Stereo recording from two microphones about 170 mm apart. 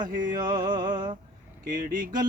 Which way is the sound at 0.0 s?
50° right (ahead or behind).